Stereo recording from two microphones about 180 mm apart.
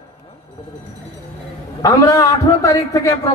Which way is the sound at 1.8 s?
20° left (ahead or behind).